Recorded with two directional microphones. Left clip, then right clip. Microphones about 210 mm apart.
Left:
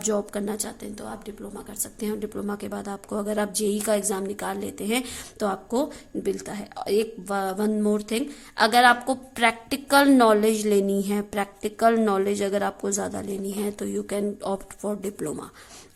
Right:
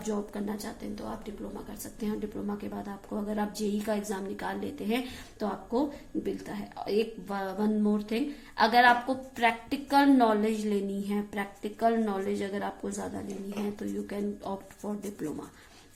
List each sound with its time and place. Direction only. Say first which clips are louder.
0.0 s a woman's voice: left 8 dB; 45° left (ahead or behind)